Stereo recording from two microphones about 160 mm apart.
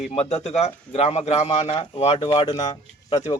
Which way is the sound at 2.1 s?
25° left (ahead or behind).